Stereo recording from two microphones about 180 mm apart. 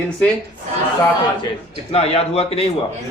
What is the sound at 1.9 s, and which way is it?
Speech, 35° left (ahead or behind).